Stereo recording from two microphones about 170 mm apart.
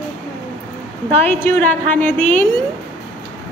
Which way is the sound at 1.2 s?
10° left (ahead or behind).